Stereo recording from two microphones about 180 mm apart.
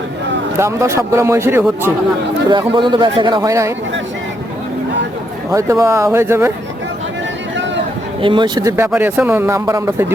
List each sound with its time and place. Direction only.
0.6 s speech: 15° right (ahead or behind)
2.5 s speech: 25° right (ahead or behind)
5.5 s speech: 15° right (ahead or behind)
8.2 s speech: 25° right (ahead or behind)